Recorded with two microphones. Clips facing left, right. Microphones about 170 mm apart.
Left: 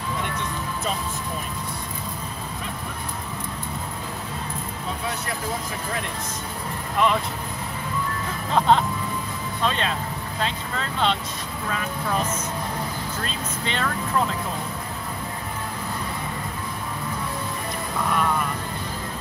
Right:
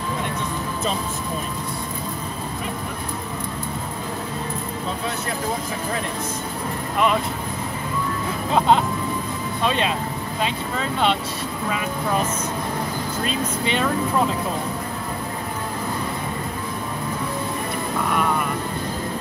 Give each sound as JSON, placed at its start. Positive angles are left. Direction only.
{"t": 8.5, "sound": "speech", "side_deg": -10}
{"t": 13.2, "sound": "speech", "side_deg": -15}